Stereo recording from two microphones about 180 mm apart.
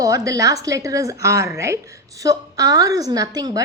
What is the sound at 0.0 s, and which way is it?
A woman's voice, 20° right (ahead or behind).